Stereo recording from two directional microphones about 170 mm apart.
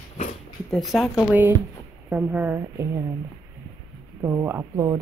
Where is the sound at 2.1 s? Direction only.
5° right (ahead or behind).